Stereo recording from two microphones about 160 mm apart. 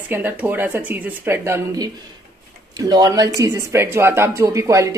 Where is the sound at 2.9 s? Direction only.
25° right (ahead or behind).